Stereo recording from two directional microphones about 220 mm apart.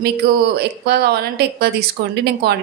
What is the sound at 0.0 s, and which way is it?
Speech, 45° right (ahead or behind).